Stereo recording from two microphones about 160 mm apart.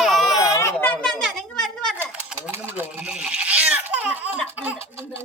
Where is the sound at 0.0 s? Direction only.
Centre (ahead or behind).